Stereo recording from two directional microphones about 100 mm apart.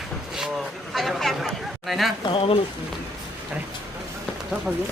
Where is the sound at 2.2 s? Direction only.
65° left (ahead or behind).